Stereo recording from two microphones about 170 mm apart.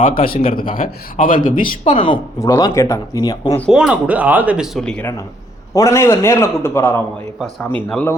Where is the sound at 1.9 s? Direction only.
30° left (ahead or behind).